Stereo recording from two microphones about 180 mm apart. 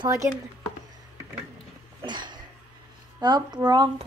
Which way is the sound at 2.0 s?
25° right (ahead or behind).